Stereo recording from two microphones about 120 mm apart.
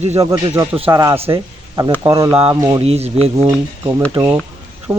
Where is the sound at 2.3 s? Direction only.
55° right (ahead or behind).